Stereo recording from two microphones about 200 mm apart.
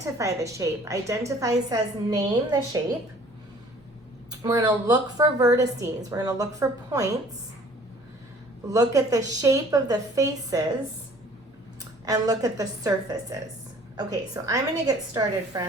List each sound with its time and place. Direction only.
0.0 s a woman's voice: 15° right (ahead or behind)
4.3 s a woman's voice: 20° right (ahead or behind)
8.7 s a woman's voice: 15° right (ahead or behind)
12.0 s a woman's voice: 20° right (ahead or behind)
13.9 s a woman's voice: 15° right (ahead or behind)